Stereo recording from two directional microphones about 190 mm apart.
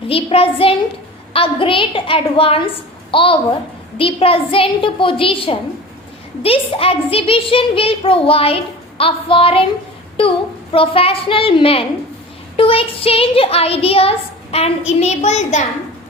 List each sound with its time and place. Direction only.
0.1 s a child's voice: 30° left (ahead or behind)